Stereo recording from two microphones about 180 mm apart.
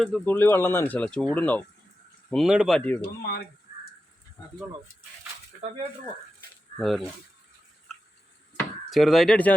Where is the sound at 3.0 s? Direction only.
55° left (ahead or behind).